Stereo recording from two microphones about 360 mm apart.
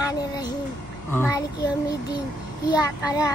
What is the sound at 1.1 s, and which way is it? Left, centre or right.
Speech, centre.